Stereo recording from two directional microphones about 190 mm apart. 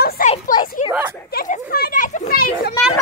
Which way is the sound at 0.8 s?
45° left (ahead or behind).